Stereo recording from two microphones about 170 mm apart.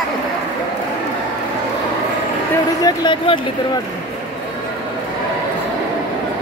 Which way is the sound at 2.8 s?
25° left (ahead or behind).